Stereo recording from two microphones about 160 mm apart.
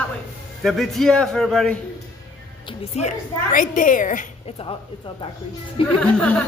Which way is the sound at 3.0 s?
55° left (ahead or behind).